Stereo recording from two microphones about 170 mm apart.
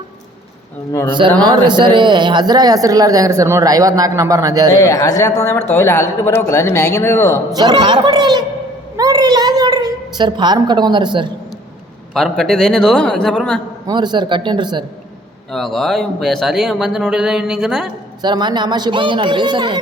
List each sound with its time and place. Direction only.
1.4 s speech: 25° right (ahead or behind)
4.8 s speech: 20° left (ahead or behind)
7.5 s a woman's voice: 25° right (ahead or behind)
12.1 s speech: 5° left (ahead or behind)
13.8 s speech: 25° right (ahead or behind)
15.5 s speech: centre (ahead or behind)
18.2 s speech: 25° right (ahead or behind)